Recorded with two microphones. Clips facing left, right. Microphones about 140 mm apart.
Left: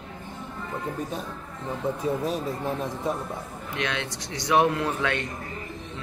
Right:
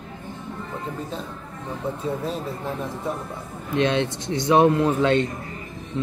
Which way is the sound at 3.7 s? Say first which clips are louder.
Right 9 dB; 25° right (ahead or behind).